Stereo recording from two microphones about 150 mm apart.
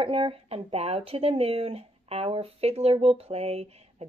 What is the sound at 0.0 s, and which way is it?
A woman's voice, 35° right (ahead or behind).